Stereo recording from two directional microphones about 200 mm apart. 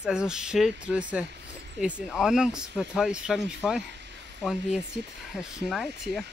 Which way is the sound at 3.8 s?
60° right (ahead or behind).